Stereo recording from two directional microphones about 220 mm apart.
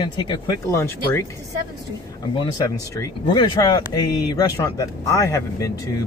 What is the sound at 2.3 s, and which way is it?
Speech, 15° left (ahead or behind).